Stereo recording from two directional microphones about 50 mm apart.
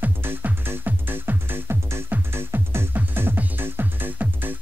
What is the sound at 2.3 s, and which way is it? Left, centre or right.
Music, right.